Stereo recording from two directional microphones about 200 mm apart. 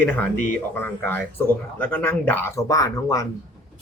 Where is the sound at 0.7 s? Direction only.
10° left (ahead or behind).